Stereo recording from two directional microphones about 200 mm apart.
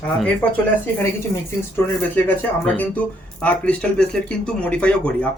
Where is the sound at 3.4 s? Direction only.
5° left (ahead or behind).